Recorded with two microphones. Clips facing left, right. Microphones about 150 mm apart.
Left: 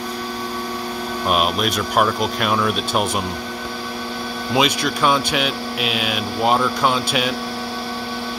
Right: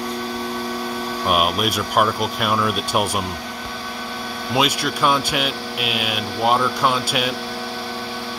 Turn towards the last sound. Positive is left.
turn(degrees=-5)  # may be behind; listen again after turning